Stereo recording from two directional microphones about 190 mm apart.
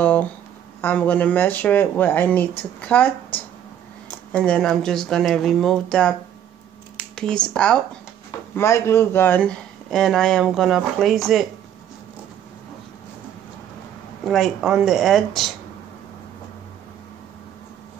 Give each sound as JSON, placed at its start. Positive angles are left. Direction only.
{"t": 0.0, "sound": "speech", "side_deg": 10}
{"t": 14.2, "sound": "speech", "side_deg": 0}